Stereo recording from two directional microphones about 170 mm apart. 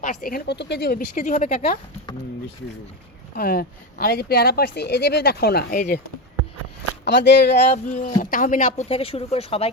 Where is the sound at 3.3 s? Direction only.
60° left (ahead or behind).